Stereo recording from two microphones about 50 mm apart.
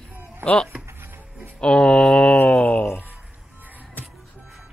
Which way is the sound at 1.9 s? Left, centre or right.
Centre.